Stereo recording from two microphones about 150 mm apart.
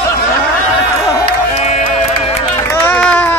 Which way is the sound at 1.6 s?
50° left (ahead or behind).